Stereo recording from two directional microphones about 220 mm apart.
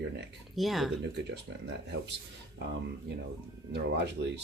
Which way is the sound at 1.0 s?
50° right (ahead or behind).